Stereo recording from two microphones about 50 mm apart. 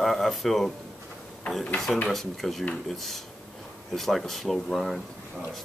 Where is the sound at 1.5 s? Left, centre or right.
Left.